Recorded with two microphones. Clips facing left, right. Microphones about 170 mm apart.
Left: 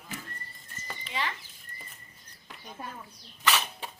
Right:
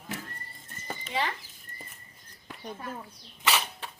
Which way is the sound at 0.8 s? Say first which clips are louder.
Right 4 dB; 40° right (ahead or behind).